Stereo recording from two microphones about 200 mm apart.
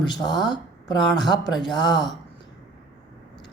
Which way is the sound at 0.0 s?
20° left (ahead or behind).